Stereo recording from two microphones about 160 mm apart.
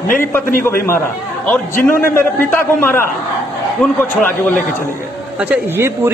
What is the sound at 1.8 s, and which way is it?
A man's voice, 15° left (ahead or behind).